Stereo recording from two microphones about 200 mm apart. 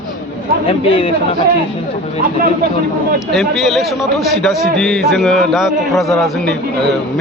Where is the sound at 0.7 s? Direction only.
30° left (ahead or behind).